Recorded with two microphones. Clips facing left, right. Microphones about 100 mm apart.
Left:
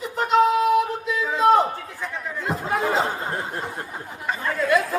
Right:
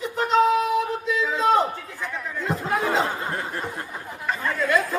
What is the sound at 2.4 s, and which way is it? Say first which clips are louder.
Chatter: even; centre (ahead or behind).